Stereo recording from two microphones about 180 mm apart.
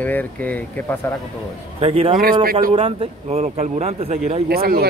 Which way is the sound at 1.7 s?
35° right (ahead or behind).